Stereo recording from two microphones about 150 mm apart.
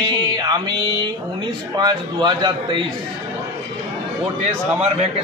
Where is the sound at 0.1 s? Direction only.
30° right (ahead or behind).